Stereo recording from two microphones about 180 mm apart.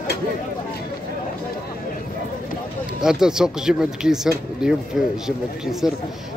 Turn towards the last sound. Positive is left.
turn(degrees=0)  # may be behind; listen again after turning